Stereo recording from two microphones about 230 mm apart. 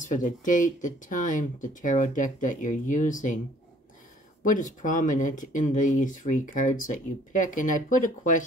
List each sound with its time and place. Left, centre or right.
0.0 s speech: left
4.5 s speech: left